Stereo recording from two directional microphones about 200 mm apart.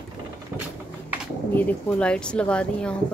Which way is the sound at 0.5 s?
5° right (ahead or behind).